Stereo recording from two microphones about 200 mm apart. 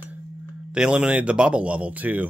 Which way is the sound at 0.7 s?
5° right (ahead or behind).